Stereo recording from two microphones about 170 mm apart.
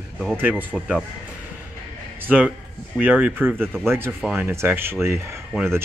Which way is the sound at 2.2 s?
10° right (ahead or behind).